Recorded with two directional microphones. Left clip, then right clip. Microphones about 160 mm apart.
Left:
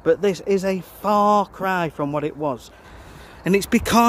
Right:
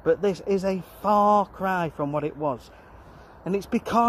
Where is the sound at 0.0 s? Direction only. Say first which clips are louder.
Left 4 dB; 35° left (ahead or behind).